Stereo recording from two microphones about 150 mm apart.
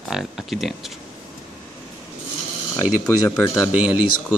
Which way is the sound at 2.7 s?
20° left (ahead or behind).